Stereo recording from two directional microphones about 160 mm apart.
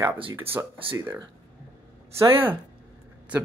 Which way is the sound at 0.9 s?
15° right (ahead or behind).